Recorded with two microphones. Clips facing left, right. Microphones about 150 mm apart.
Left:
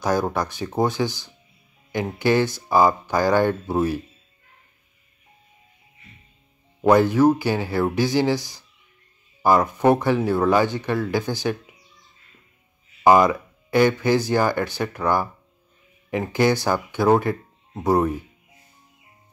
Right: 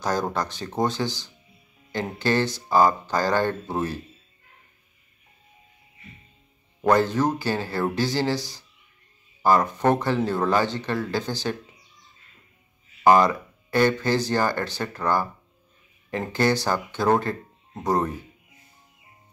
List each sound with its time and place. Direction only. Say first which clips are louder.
0.0 s speech: left 3 dB; 10° left (ahead or behind)
6.8 s speech: left 5 dB; 10° left (ahead or behind)
13.0 s speech: left 2 dB; 10° left (ahead or behind)